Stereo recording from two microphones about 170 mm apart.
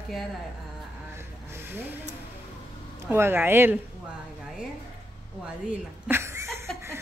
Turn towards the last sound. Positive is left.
turn(degrees=-15)  # may be behind; listen again after turning